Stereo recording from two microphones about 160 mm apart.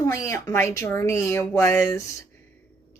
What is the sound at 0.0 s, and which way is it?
Speech, 20° left (ahead or behind).